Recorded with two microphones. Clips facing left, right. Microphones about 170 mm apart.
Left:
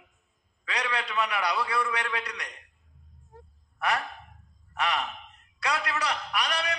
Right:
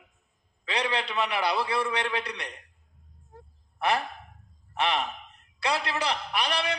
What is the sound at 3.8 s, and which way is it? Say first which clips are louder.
A man's voice: right 2 dB; 30° right (ahead or behind).